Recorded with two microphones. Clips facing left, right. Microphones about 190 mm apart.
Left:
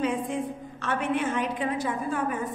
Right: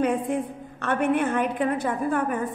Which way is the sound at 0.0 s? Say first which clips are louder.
Right 4 dB; 55° right (ahead or behind).